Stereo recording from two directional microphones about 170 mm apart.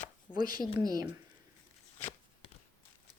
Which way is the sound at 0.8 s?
20° right (ahead or behind).